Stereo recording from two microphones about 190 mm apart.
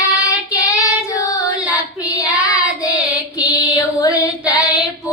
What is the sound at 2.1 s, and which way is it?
Child singing, 15° left (ahead or behind).